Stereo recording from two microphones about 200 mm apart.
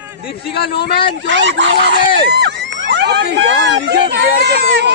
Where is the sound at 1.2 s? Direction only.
65° right (ahead or behind).